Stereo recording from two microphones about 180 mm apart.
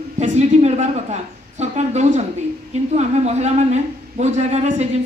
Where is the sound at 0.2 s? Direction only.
40° right (ahead or behind).